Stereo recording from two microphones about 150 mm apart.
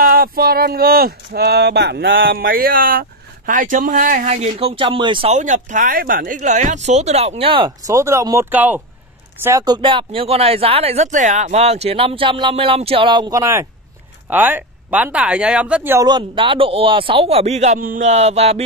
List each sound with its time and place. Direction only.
0.0 s speech: 75° right (ahead or behind)
4.3 s speech: 45° right (ahead or behind)
5.3 s speech: 55° right (ahead or behind); by 7.7 s 35° right (ahead or behind)
7.8 s speech: 20° right (ahead or behind)
16.1 s speech: 35° right (ahead or behind)
17.7 s speech: 65° right (ahead or behind); by 18.6 s 45° right (ahead or behind)